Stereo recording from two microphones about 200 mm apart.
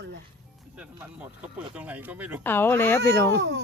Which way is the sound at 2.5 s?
10° left (ahead or behind).